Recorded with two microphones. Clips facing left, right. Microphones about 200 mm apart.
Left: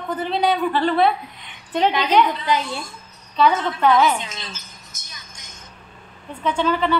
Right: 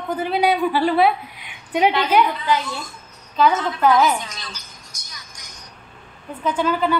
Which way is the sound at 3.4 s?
Centre (ahead or behind).